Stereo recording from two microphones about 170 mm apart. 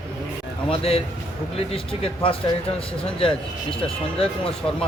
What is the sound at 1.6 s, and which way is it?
Speech, 35° left (ahead or behind).